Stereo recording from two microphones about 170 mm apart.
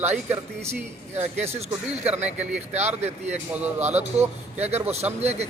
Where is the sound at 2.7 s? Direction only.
40° right (ahead or behind).